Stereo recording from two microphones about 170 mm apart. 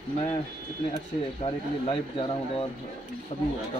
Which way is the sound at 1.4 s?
30° left (ahead or behind).